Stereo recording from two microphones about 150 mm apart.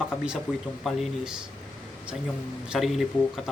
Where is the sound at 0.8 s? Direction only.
5° right (ahead or behind).